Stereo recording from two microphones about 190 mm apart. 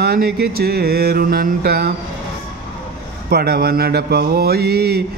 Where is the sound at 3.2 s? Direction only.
55° right (ahead or behind).